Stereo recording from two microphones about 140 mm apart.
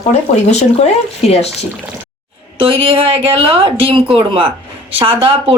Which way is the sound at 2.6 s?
40° right (ahead or behind).